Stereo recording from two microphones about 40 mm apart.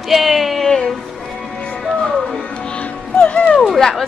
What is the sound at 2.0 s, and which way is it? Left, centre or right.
Music, centre.